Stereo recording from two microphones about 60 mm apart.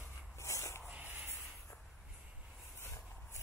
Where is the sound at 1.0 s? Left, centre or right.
Right.